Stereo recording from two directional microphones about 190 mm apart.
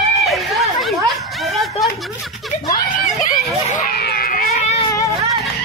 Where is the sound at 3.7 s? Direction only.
45° left (ahead or behind).